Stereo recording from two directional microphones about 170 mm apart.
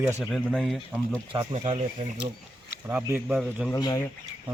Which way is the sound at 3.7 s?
20° left (ahead or behind).